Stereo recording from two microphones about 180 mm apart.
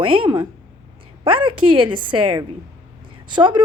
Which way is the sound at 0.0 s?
30° right (ahead or behind).